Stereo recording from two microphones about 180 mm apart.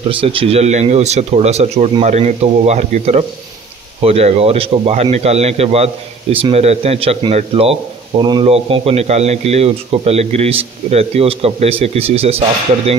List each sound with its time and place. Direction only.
0.1 s a man's voice: 30° right (ahead or behind)